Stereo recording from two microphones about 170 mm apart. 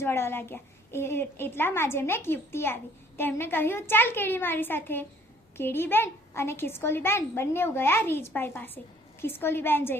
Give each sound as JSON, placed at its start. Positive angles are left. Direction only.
{"t": 0.0, "sound": "a woman's voice", "side_deg": 15}